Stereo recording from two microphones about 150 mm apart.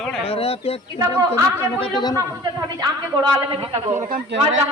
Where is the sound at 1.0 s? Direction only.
25° right (ahead or behind).